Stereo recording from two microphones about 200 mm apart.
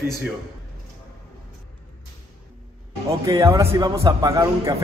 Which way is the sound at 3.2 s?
15° right (ahead or behind).